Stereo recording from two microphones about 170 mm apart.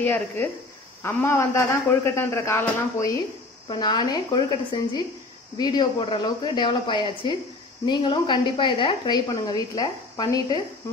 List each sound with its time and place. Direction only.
0.0 s a man's voice: 10° left (ahead or behind)